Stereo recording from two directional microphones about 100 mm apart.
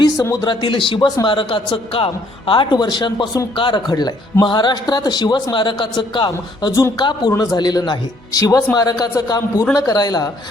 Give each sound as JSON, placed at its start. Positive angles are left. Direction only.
{"t": 0.0, "sound": "a sound", "side_deg": 35}
{"t": 0.4, "sound": "a man's voice", "side_deg": 55}
{"t": 7.3, "sound": "a man's voice", "side_deg": 35}